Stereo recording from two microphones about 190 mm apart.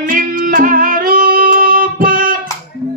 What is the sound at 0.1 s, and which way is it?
Music, 45° right (ahead or behind).